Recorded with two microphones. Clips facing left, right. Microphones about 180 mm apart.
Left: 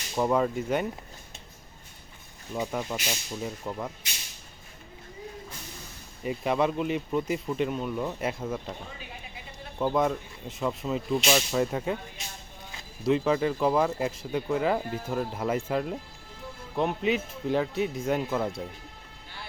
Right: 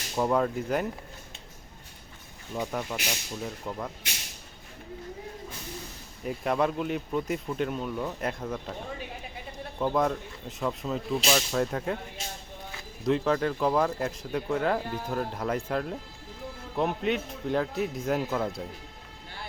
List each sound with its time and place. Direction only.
0.2 s speech: 5° left (ahead or behind)
2.6 s speech: centre (ahead or behind)
6.2 s speech: centre (ahead or behind)
9.7 s speech: centre (ahead or behind)
13.1 s speech: 5° left (ahead or behind)